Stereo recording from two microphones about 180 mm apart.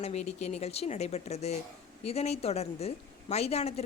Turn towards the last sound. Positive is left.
turn(degrees=35)  # may be behind; listen again after turning